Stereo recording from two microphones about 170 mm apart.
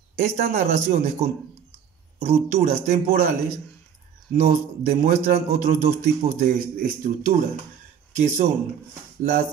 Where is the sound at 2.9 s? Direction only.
60° right (ahead or behind).